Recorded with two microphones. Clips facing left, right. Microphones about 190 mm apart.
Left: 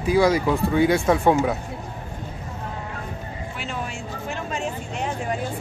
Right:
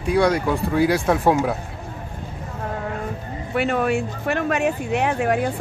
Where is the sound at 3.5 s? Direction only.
60° right (ahead or behind).